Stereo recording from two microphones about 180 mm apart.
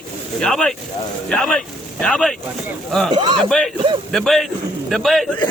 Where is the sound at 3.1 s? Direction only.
25° right (ahead or behind).